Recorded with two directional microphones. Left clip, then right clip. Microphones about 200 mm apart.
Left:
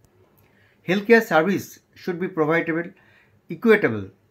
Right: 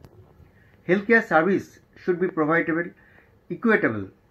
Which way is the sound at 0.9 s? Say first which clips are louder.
Left 2 dB; 40° left (ahead or behind).